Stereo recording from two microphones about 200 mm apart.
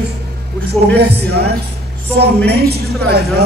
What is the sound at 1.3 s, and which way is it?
Speech, 50° right (ahead or behind).